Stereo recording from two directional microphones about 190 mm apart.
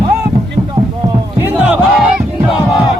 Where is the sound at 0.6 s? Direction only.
20° right (ahead or behind).